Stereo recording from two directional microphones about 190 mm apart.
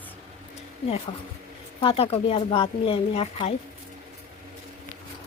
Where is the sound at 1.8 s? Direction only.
30° left (ahead or behind).